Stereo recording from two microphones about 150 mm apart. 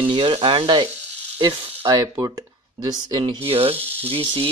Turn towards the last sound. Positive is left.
turn(degrees=-35)  # may be behind; listen again after turning